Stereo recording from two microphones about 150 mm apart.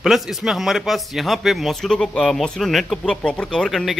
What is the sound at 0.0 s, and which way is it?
Speech, centre (ahead or behind).